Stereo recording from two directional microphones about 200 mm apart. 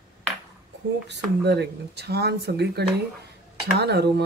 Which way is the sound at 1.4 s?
55° right (ahead or behind).